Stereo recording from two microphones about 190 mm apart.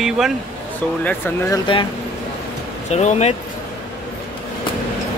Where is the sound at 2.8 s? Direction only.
35° left (ahead or behind).